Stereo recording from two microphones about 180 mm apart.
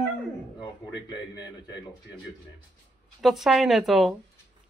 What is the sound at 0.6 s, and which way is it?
Speech, 25° left (ahead or behind).